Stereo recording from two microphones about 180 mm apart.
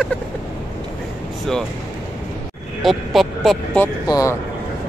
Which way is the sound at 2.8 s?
Centre (ahead or behind).